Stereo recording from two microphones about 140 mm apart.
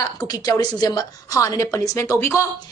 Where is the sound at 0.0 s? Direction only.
30° left (ahead or behind).